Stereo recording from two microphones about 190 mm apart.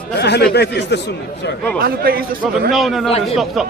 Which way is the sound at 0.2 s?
60° left (ahead or behind).